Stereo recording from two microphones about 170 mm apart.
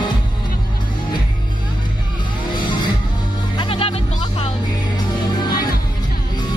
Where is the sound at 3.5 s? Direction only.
30° left (ahead or behind).